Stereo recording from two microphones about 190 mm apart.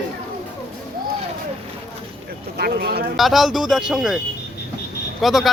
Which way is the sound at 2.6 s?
55° right (ahead or behind).